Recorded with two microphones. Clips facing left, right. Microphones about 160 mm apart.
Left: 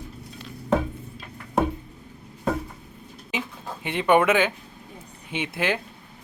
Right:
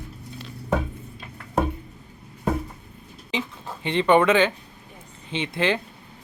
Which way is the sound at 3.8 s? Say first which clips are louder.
Right 1 dB; 10° left (ahead or behind).